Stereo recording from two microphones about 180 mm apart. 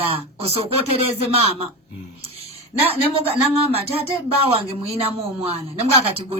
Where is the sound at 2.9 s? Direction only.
35° right (ahead or behind).